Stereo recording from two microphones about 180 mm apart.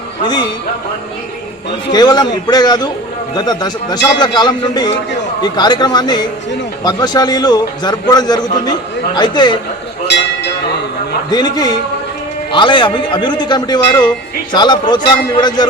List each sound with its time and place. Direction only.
0.2 s a man's voice: 25° left (ahead or behind)
1.9 s a man's voice: 20° left (ahead or behind)
10.1 s a sound: 65° left (ahead or behind)
11.3 s a man's voice: 20° left (ahead or behind)